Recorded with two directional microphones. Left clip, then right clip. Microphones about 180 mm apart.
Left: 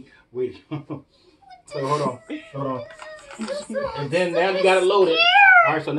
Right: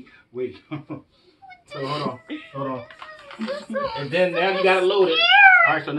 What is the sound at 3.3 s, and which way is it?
Speech, 10° right (ahead or behind).